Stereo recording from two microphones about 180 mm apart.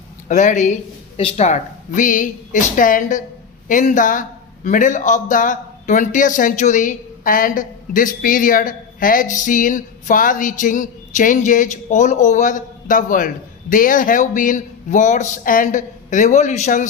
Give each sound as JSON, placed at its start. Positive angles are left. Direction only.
{"t": 0.3, "sound": "a man's voice", "side_deg": 45}